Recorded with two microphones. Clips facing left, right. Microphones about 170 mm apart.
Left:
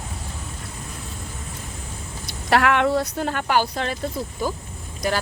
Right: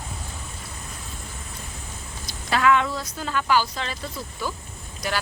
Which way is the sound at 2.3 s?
65° left (ahead or behind).